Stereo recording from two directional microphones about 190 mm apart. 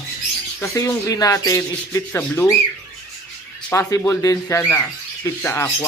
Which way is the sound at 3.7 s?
15° left (ahead or behind).